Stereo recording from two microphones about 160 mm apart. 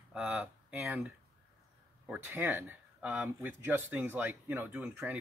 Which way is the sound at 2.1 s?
10° right (ahead or behind).